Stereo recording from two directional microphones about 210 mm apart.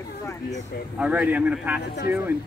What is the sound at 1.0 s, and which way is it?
Speech, 5° right (ahead or behind).